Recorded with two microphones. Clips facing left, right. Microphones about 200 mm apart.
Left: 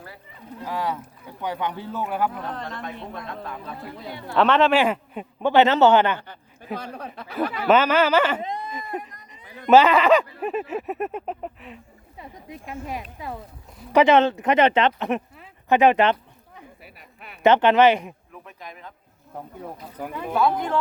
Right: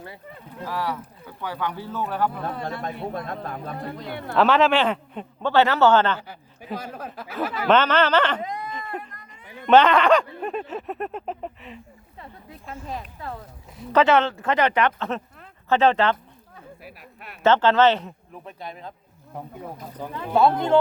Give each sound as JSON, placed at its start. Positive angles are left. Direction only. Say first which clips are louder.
{"t": 0.6, "sound": "a man's voice", "louder": "left 1 dB", "side_deg": 20}
{"t": 3.2, "sound": "speech", "louder": "right 2 dB", "side_deg": -50}
{"t": 4.4, "sound": "a sound", "louder": "even", "side_deg": 0}
{"t": 4.8, "sound": "a man's voice", "louder": "left 1 dB", "side_deg": 10}
{"t": 6.1, "sound": "a sound", "louder": "right 1 dB", "side_deg": -10}
{"t": 7.7, "sound": "a man's voice", "louder": "left 1 dB", "side_deg": 10}
{"t": 8.4, "sound": "speech", "louder": "left 1 dB", "side_deg": 25}
{"t": 8.7, "sound": "a sound", "louder": "left 1 dB", "side_deg": 10}
{"t": 12.2, "sound": "a man's voice", "louder": "left 3 dB", "side_deg": 15}
{"t": 16.8, "sound": "a man's voice", "louder": "right 3 dB", "side_deg": 0}
{"t": 17.4, "sound": "a man's voice", "louder": "left 2 dB", "side_deg": 15}
{"t": 18.4, "sound": "speech", "louder": "right 5 dB", "side_deg": -30}
{"t": 20.0, "sound": "a man's voice", "louder": "left 2 dB", "side_deg": 15}
{"t": 20.3, "sound": "speech", "louder": "right 3 dB", "side_deg": -25}